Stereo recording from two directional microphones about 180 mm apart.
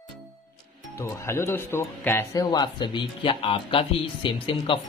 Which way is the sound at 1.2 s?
15° left (ahead or behind).